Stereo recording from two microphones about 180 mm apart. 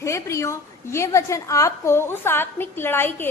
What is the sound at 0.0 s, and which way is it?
A woman's voice, 15° left (ahead or behind).